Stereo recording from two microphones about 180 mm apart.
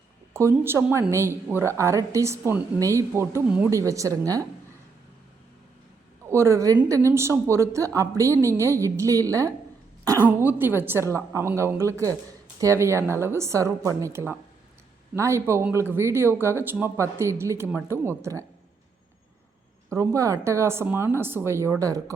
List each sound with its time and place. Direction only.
0.3 s a woman's voice: 15° right (ahead or behind)
6.2 s a woman's voice: 15° right (ahead or behind)
19.9 s a woman's voice: 15° right (ahead or behind)